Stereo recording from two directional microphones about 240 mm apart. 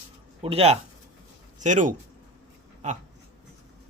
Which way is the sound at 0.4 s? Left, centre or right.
Right.